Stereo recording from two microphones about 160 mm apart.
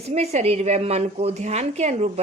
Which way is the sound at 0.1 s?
45° right (ahead or behind).